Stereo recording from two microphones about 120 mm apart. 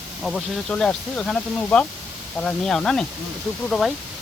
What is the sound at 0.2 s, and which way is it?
Speech, centre (ahead or behind).